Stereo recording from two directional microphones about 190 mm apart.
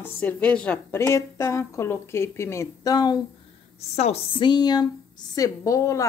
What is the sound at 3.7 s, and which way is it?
A woman's voice, 35° left (ahead or behind).